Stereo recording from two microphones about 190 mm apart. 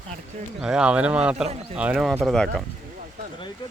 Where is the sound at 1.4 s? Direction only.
35° right (ahead or behind).